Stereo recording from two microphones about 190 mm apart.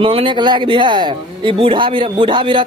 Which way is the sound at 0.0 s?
30° right (ahead or behind).